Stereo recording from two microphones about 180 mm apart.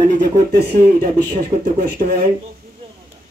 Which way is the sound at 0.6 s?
55° right (ahead or behind).